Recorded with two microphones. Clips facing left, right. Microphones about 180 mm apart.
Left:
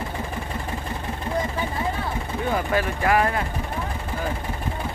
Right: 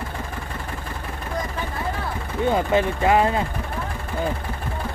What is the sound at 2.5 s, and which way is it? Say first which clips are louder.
Speech: right 4 dB; 20° right (ahead or behind).